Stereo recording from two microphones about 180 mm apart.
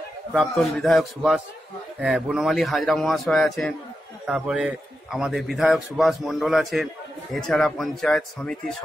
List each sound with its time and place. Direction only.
0.3 s a man's voice: 5° left (ahead or behind)